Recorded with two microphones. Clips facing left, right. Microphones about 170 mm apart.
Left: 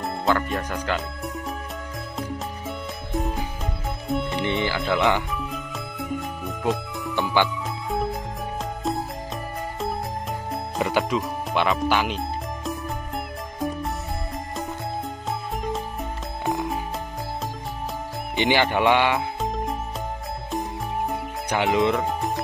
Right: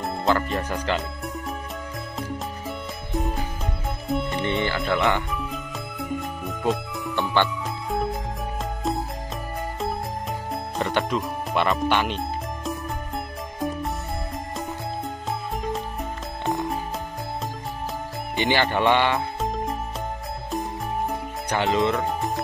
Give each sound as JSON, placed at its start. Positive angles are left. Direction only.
{"t": 0.0, "sound": "speech", "side_deg": 0}
{"t": 3.1, "sound": "music", "side_deg": 0}
{"t": 4.6, "sound": "speech", "side_deg": 0}
{"t": 5.3, "sound": "music", "side_deg": 0}
{"t": 10.5, "sound": "music", "side_deg": 0}
{"t": 15.6, "sound": "music", "side_deg": 0}
{"t": 18.3, "sound": "speech", "side_deg": 20}
{"t": 19.1, "sound": "music", "side_deg": 0}
{"t": 21.1, "sound": "music", "side_deg": 10}
{"t": 21.9, "sound": "music", "side_deg": 0}